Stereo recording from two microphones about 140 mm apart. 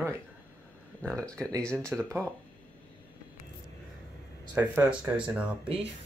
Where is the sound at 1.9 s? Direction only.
15° right (ahead or behind).